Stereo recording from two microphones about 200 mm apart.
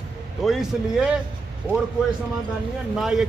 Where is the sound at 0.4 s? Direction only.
Centre (ahead or behind).